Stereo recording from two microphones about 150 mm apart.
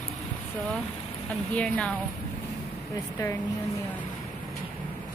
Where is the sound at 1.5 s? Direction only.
5° left (ahead or behind).